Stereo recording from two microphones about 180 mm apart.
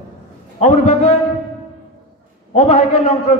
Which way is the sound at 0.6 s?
40° left (ahead or behind).